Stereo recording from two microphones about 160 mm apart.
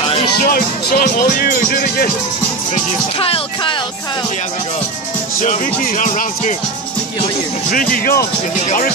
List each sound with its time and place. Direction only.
0.4 s speech: 65° left (ahead or behind)
3.2 s music: 35° left (ahead or behind)
5.4 s speech: 55° left (ahead or behind)
7.7 s speech: 65° left (ahead or behind)